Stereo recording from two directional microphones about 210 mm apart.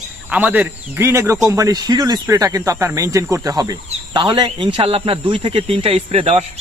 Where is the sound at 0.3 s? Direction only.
5° right (ahead or behind).